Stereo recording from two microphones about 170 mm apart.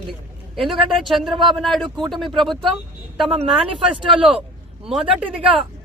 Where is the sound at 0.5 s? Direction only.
Centre (ahead or behind).